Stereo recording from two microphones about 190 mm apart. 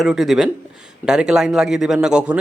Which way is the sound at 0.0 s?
Centre (ahead or behind).